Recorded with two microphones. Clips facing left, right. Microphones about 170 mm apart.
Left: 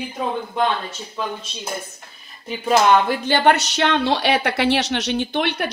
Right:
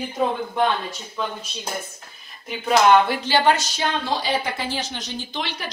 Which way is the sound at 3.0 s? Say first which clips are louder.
Left 2 dB; 55° left (ahead or behind).